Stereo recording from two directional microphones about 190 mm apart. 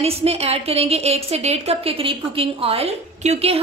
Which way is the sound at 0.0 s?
30° right (ahead or behind).